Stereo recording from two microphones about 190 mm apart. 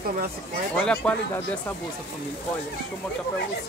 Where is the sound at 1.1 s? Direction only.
5° left (ahead or behind).